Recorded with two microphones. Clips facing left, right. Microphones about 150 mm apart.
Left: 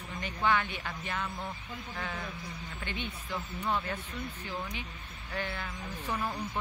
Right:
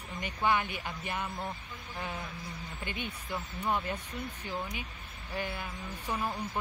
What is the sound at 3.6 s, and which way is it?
A woman's voice, 15° right (ahead or behind).